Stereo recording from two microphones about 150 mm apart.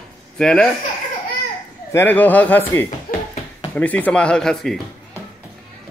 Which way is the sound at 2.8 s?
45° left (ahead or behind).